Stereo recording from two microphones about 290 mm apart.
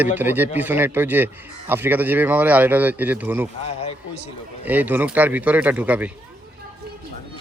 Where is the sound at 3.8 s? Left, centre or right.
Left.